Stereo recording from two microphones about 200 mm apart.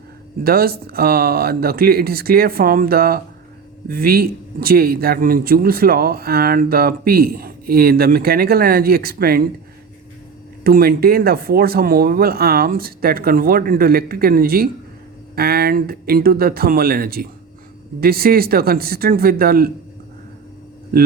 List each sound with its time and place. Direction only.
0.4 s speech: 50° right (ahead or behind)
10.6 s speech: 50° right (ahead or behind)